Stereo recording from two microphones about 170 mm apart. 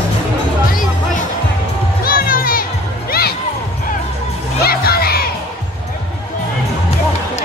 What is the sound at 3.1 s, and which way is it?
Basketball bounce, 65° left (ahead or behind).